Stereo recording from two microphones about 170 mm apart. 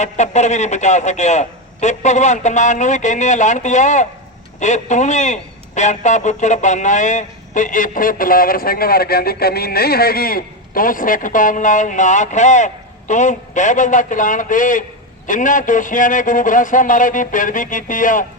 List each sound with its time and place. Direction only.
0.0 s a man's voice: 45° left (ahead or behind)